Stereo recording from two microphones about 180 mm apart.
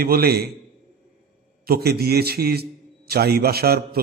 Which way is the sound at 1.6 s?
60° right (ahead or behind).